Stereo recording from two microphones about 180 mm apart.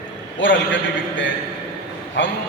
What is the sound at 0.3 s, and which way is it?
A man's voice, 90° left.